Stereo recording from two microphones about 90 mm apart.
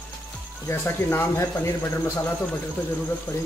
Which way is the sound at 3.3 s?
20° left (ahead or behind).